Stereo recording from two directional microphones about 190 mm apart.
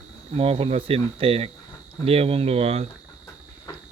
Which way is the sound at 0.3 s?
30° right (ahead or behind).